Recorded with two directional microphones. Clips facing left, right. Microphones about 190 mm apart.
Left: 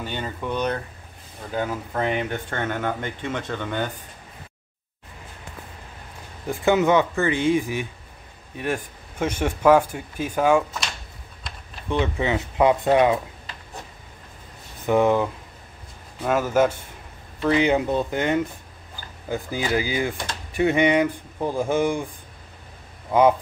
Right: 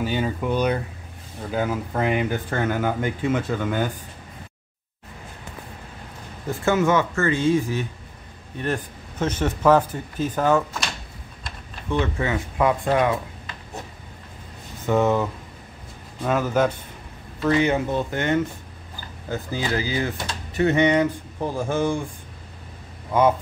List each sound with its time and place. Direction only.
0.0 s speech: 5° right (ahead or behind)
6.5 s speech: 15° left (ahead or behind)
11.9 s speech: 20° left (ahead or behind)
14.9 s speech: 15° left (ahead or behind)